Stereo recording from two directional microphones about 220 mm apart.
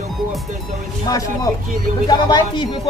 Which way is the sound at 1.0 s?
15° left (ahead or behind).